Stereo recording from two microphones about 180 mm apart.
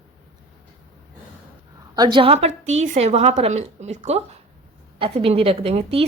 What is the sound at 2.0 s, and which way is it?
A woman's voice, 25° right (ahead or behind).